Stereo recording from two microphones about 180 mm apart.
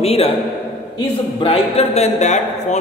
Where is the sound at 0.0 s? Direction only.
35° left (ahead or behind).